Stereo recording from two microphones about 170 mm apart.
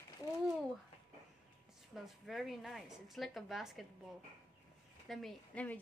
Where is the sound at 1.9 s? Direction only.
Centre (ahead or behind).